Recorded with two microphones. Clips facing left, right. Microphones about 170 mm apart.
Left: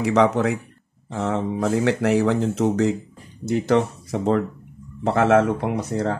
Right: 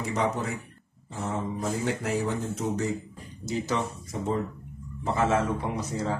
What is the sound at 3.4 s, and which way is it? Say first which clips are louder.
Speech: left 9 dB; 60° left (ahead or behind).